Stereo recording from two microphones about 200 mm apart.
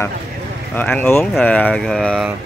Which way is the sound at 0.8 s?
10° left (ahead or behind).